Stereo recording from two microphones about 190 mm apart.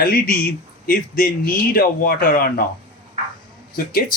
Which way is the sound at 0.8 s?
45° left (ahead or behind).